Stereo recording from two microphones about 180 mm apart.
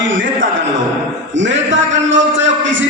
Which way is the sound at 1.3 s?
90° right.